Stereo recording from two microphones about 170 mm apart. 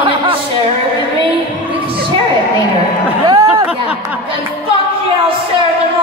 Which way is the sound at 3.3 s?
20° right (ahead or behind).